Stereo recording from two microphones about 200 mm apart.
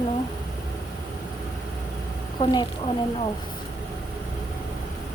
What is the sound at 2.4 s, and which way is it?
Speech, 20° left (ahead or behind).